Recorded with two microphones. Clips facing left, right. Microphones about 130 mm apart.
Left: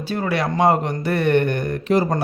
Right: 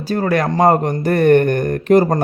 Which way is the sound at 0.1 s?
45° right (ahead or behind).